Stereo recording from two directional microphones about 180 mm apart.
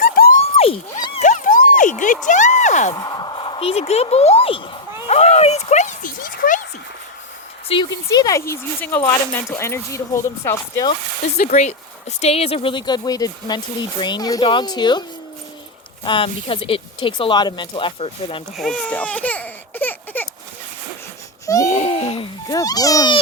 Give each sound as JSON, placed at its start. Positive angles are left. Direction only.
{"t": 0.0, "sound": "a sound", "side_deg": 50}
{"t": 0.5, "sound": "a sound", "side_deg": 35}
{"t": 1.2, "sound": "a sound", "side_deg": 45}
{"t": 2.2, "sound": "speech", "side_deg": 45}
{"t": 2.9, "sound": "speech", "side_deg": 20}
{"t": 5.0, "sound": "a sound", "side_deg": 35}
{"t": 7.7, "sound": "speech", "side_deg": 25}
{"t": 11.3, "sound": "speech", "side_deg": 40}
{"t": 16.0, "sound": "speech", "side_deg": 30}
{"t": 18.5, "sound": "speech", "side_deg": 0}
{"t": 21.4, "sound": "baby cry", "side_deg": 20}
{"t": 21.7, "sound": "a child's voice", "side_deg": 40}